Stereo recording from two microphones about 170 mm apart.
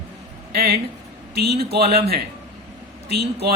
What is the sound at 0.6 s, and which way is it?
A man's voice, 70° right (ahead or behind).